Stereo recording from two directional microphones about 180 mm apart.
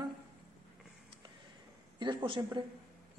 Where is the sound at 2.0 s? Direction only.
25° right (ahead or behind).